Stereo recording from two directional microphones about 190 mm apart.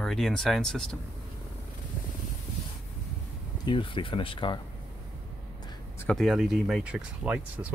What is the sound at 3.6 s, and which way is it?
Speech, 25° left (ahead or behind).